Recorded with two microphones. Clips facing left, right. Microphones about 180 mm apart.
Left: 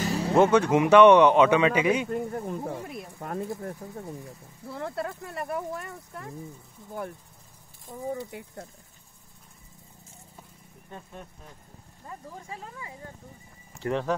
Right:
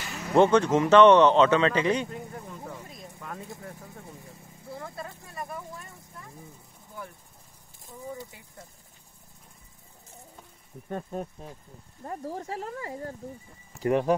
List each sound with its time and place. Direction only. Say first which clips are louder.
0.0 s music: left 11 dB; 35° left (ahead or behind)
0.3 s speech: even; 5° left (ahead or behind)
2.0 s speech: left 9 dB; 50° left (ahead or behind)
2.8 s speech: left 7 dB; 70° left (ahead or behind)
3.2 s speech: left 8 dB; 45° left (ahead or behind)
4.6 s speech: left 6 dB; 65° left (ahead or behind)
7.8 s speech: left 6 dB; 45° left (ahead or behind)
10.9 s speech: right 10 dB; 50° right (ahead or behind)
12.4 s speech: right 6 dB; 75° right (ahead or behind)
12.7 s speech: right 7 dB; 45° right (ahead or behind)
13.8 s speech: right 4 dB; 15° right (ahead or behind)